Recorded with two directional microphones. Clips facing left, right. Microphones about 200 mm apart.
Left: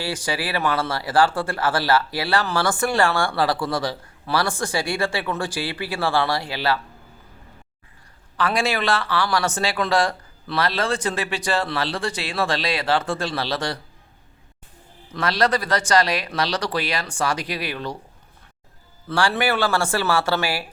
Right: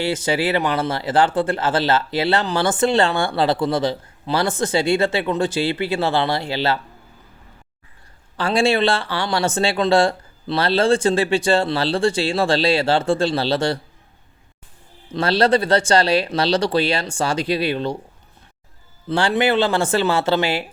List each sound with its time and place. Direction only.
0.0 s speech: 25° right (ahead or behind)
8.4 s speech: 30° right (ahead or behind)
15.1 s speech: 30° right (ahead or behind)
19.0 s speech: 20° right (ahead or behind)